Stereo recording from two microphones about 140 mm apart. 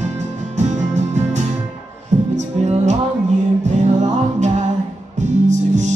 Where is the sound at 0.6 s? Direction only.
55° right (ahead or behind).